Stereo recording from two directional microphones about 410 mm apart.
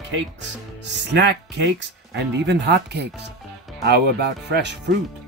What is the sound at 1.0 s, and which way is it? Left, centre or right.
Speech, right.